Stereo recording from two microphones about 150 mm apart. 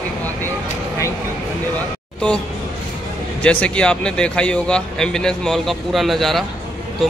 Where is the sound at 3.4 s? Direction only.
10° left (ahead or behind).